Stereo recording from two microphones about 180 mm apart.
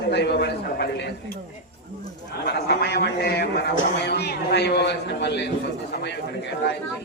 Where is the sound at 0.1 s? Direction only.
70° left (ahead or behind).